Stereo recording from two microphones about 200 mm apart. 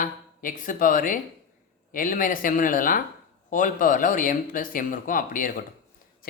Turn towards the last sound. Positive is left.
turn(degrees=45)  # may be behind; listen again after turning